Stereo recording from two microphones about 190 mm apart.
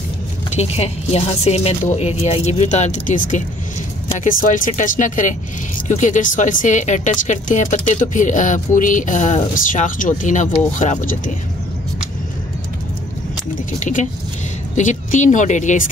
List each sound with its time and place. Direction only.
0.5 s speech: 35° left (ahead or behind)
13.7 s speech: 40° left (ahead or behind)